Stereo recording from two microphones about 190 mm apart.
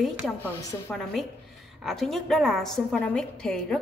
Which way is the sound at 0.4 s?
15° left (ahead or behind).